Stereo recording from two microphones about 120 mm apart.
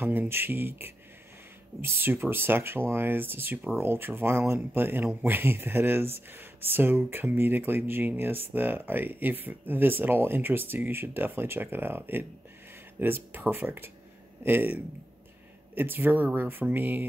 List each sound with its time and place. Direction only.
0.0 s speech: 15° right (ahead or behind)